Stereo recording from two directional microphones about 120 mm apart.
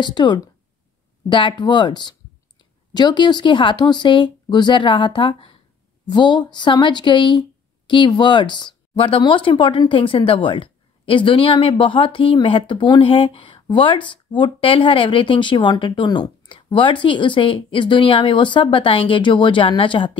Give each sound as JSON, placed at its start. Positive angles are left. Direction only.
{"t": 0.0, "sound": "speech", "side_deg": 40}